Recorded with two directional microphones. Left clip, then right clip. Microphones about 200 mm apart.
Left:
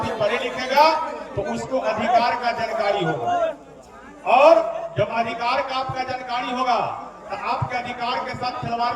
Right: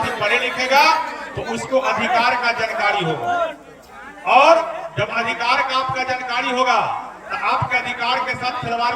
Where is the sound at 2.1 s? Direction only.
25° left (ahead or behind).